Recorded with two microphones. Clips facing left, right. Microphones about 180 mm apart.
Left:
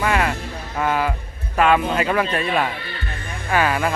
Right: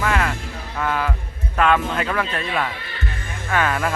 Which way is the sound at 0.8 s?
20° left (ahead or behind).